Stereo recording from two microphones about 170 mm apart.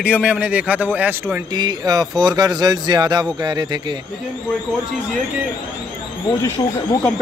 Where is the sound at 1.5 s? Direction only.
25° right (ahead or behind).